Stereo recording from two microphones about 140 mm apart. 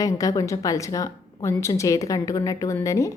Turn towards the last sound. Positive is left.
turn(degrees=20)  # may be behind; listen again after turning